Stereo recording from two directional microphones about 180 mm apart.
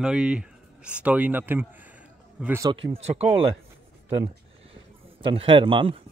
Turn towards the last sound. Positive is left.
turn(degrees=-30)  # may be behind; listen again after turning